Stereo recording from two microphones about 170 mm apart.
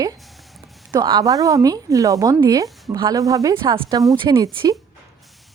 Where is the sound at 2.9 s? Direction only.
25° right (ahead or behind).